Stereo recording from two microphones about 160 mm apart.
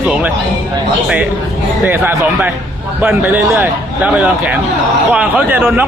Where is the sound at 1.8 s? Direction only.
10° right (ahead or behind).